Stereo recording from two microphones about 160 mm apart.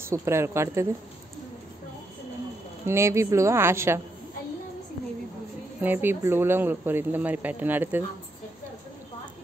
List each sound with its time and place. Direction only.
0.0 s speech: 15° right (ahead or behind)
2.9 s speech: 15° right (ahead or behind)
5.8 s speech: 10° right (ahead or behind)